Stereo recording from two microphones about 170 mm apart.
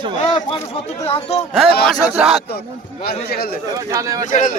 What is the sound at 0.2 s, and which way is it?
Speech, 30° left (ahead or behind).